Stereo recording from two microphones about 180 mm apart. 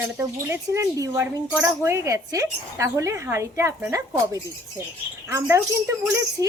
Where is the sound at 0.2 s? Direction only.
15° right (ahead or behind).